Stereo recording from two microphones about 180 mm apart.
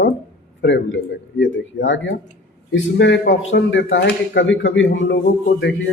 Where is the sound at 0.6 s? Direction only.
80° left.